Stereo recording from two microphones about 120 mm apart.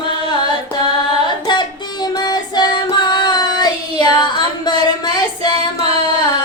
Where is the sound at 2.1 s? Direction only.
35° left (ahead or behind).